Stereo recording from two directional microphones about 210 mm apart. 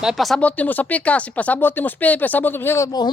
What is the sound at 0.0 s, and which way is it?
Speech, centre (ahead or behind).